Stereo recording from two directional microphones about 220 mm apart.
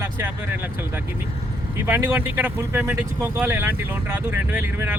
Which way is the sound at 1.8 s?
10° right (ahead or behind).